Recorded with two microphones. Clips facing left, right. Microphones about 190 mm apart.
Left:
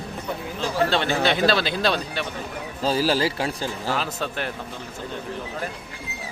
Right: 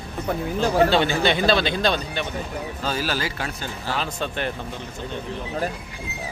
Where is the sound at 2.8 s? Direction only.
30° left (ahead or behind).